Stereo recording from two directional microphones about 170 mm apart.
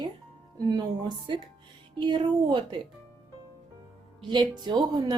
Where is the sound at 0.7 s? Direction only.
25° right (ahead or behind).